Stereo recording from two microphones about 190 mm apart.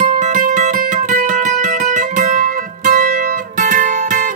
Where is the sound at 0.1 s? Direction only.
40° right (ahead or behind).